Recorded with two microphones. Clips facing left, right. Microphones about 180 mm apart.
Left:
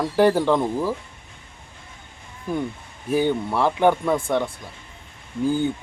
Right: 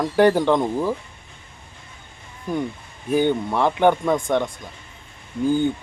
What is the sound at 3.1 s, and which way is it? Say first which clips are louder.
Speech: right 1 dB; 5° left (ahead or behind).